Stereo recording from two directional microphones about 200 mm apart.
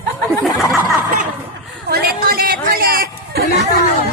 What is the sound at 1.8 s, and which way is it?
Speech, 50° right (ahead or behind).